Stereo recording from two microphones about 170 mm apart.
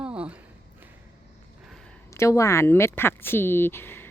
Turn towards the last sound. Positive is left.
turn(degrees=15)  # may be behind; listen again after turning